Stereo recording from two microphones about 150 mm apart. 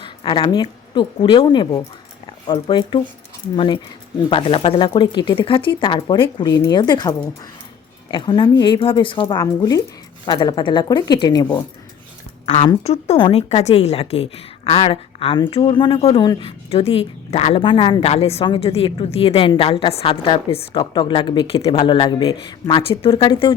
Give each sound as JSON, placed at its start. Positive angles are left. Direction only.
{"t": 0.0, "sound": "a woman's voice", "side_deg": 35}
{"t": 9.2, "sound": "a woman's voice", "side_deg": 20}
{"t": 12.8, "sound": "a woman's voice", "side_deg": 45}
{"t": 22.1, "sound": "a woman's voice", "side_deg": 30}